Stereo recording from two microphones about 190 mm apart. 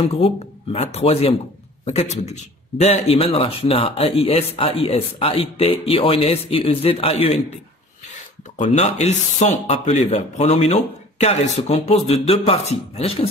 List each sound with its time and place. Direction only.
0.0 s a man's voice: 30° left (ahead or behind)